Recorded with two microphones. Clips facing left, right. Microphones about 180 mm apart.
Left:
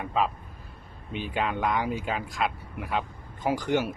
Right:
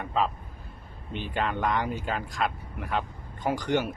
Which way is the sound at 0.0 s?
5° left (ahead or behind).